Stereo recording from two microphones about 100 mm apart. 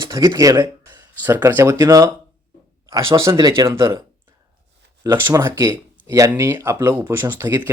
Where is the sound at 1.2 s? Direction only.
20° right (ahead or behind).